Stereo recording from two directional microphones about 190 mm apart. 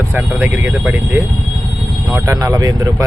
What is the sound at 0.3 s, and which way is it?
Speech, 10° right (ahead or behind).